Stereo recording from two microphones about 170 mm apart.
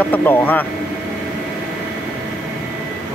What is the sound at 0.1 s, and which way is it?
Speech, 10° left (ahead or behind).